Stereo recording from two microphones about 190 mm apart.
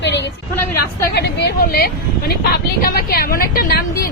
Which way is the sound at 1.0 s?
60° left (ahead or behind).